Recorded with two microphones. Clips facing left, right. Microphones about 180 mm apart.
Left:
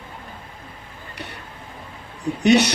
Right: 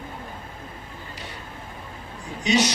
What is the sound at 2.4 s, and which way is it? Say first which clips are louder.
Speech: left 6 dB; 65° left (ahead or behind).